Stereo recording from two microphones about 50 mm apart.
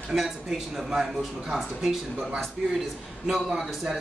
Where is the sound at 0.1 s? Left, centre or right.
Centre.